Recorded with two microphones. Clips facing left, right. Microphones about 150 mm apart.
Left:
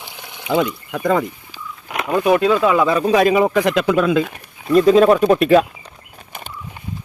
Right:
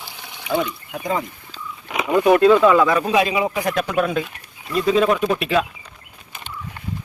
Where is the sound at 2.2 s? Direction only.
10° left (ahead or behind).